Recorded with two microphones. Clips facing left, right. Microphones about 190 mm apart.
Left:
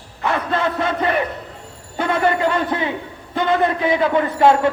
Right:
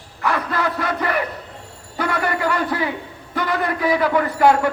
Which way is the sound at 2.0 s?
25° left (ahead or behind).